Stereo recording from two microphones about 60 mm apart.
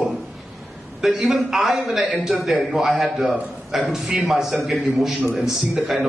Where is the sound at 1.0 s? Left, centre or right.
Centre.